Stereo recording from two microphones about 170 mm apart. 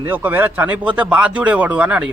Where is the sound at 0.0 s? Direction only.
10° right (ahead or behind).